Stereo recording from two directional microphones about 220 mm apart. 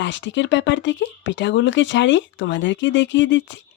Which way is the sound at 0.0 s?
55° left (ahead or behind).